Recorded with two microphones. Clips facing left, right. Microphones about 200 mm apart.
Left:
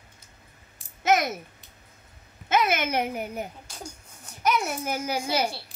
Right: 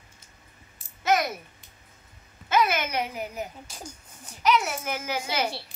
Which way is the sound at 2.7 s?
55° left (ahead or behind).